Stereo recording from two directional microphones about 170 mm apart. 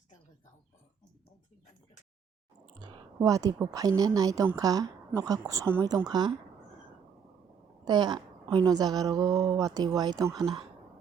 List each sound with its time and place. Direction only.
2.7 s a woman's voice: 25° right (ahead or behind)
7.9 s speech: 25° right (ahead or behind)